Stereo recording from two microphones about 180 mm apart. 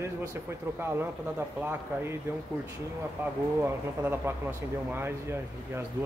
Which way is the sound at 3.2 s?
15° right (ahead or behind).